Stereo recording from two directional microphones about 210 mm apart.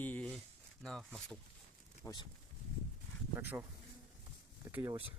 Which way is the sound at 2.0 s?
20° left (ahead or behind).